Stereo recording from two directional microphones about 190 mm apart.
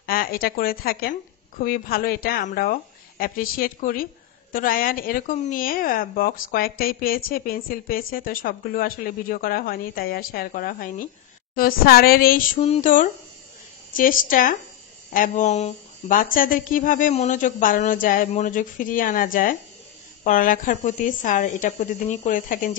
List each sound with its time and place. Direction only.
0.0 s a woman's voice: 50° left (ahead or behind)